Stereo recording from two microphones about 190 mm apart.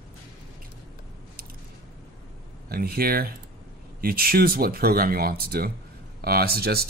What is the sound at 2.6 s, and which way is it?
Speech, 55° right (ahead or behind).